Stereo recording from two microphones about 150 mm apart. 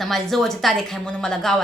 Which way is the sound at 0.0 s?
Centre (ahead or behind).